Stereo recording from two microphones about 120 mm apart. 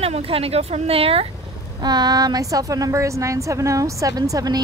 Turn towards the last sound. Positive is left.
turn(degrees=-30)  # may be behind; listen again after turning